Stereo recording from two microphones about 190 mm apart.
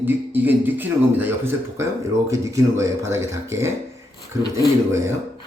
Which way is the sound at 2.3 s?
15° right (ahead or behind).